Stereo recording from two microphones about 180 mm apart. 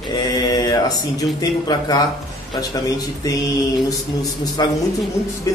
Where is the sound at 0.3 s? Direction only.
20° left (ahead or behind).